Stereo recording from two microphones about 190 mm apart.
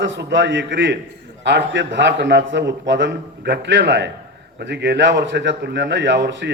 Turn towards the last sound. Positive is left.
turn(degrees=-65)  # may be behind; listen again after turning